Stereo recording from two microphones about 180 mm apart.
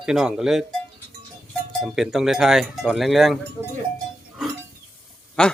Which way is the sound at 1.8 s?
Centre (ahead or behind).